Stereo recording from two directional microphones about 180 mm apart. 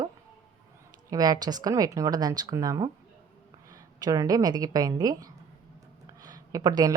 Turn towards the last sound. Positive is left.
turn(degrees=-20)  # may be behind; listen again after turning